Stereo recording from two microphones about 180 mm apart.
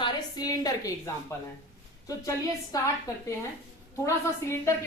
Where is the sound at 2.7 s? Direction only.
20° left (ahead or behind).